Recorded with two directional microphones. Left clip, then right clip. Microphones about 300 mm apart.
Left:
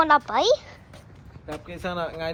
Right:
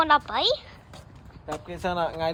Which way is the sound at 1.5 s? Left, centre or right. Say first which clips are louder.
Right 2 dB; right.